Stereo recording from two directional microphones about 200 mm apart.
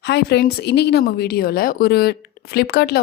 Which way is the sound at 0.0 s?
55° left (ahead or behind).